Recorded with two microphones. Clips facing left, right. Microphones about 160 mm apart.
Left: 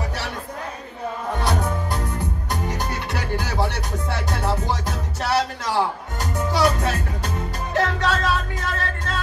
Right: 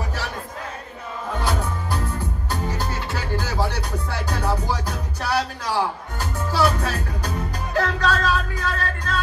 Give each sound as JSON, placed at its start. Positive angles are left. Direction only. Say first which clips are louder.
{"t": 2.5, "sound": "music", "louder": "even", "side_deg": 20}